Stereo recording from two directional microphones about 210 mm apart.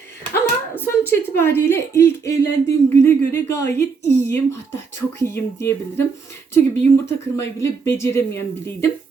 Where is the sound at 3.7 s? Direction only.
50° left (ahead or behind).